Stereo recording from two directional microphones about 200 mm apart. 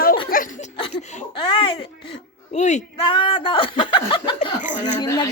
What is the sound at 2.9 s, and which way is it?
Speech, 25° left (ahead or behind).